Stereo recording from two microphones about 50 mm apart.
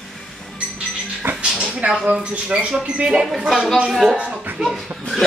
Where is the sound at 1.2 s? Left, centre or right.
Right.